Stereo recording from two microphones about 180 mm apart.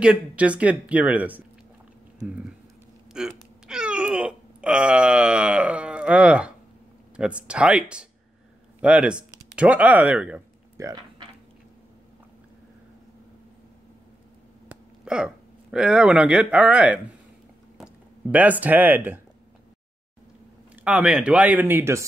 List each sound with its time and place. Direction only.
0.0 s speech: 5° right (ahead or behind)
3.1 s a sound: 5° right (ahead or behind)
7.2 s speech: 5° right (ahead or behind)
10.8 s speech: 15° right (ahead or behind)
14.7 s speech: 5° right (ahead or behind)
20.7 s speech: 5° right (ahead or behind)